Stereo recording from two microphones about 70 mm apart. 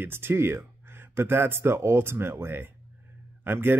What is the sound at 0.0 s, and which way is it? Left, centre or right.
Speech, right.